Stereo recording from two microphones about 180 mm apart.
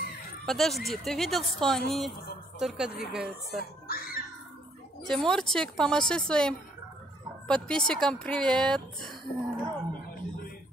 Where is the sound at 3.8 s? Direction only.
55° left (ahead or behind).